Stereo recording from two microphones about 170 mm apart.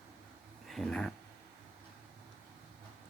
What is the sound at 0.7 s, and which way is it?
Speech, 5° left (ahead or behind).